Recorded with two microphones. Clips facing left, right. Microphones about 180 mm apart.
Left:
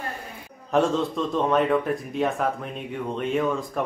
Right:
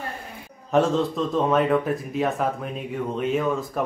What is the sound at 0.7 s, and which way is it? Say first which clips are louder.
Speech: right 1 dB; centre (ahead or behind).